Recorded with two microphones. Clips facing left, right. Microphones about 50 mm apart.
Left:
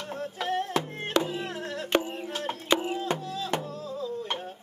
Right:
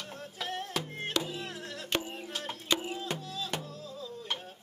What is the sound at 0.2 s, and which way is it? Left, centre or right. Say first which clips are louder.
Music: left 9 dB; centre.